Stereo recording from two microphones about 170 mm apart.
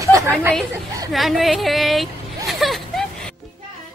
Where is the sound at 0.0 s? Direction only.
15° right (ahead or behind).